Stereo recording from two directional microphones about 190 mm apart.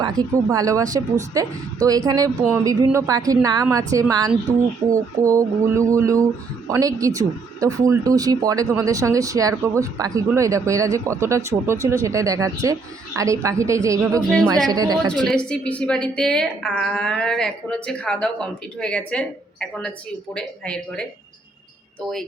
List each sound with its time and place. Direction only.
0.0 s speech: 20° right (ahead or behind)
5.2 s speech: 15° right (ahead or behind)
14.2 s a woman's voice: 5° left (ahead or behind)
14.7 s speech: 20° right (ahead or behind)
15.3 s a woman's voice: 5° left (ahead or behind)